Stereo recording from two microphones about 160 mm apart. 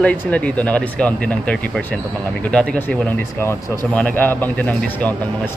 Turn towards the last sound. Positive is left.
turn(degrees=10)  # may be behind; listen again after turning